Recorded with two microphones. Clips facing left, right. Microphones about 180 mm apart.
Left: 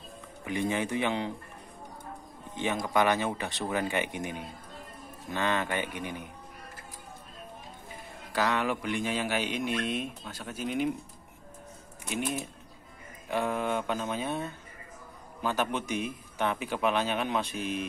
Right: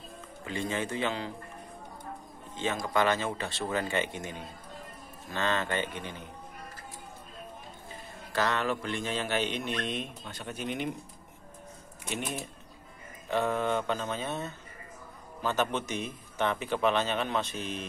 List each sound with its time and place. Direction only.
0.5 s speech: 15° left (ahead or behind)
2.5 s speech: 15° left (ahead or behind)
8.3 s speech: 10° left (ahead or behind)
12.0 s speech: 5° left (ahead or behind)